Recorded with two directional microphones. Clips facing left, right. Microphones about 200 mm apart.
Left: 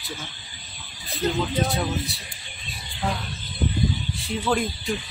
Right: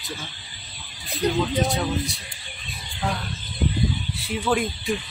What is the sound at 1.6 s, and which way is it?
Speech, centre (ahead or behind).